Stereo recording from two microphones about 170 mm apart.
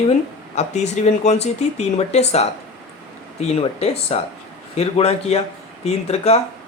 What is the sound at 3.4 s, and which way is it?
Speech, 40° left (ahead or behind).